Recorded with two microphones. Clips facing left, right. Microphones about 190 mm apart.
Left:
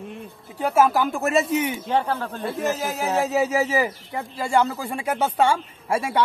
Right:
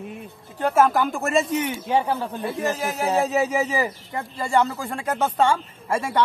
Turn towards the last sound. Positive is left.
turn(degrees=10)  # may be behind; listen again after turning